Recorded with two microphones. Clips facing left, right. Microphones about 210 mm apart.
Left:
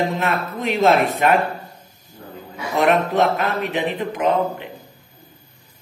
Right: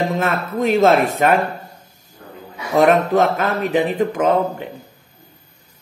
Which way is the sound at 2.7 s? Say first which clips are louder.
Right 4 dB; 40° right (ahead or behind).